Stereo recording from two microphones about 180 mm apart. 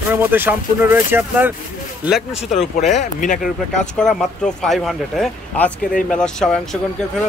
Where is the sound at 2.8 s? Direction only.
40° left (ahead or behind).